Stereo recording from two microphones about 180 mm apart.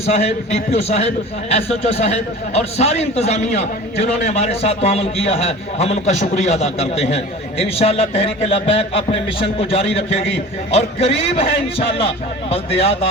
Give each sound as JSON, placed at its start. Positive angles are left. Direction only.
{"t": 0.0, "sound": "a man's voice", "side_deg": 35}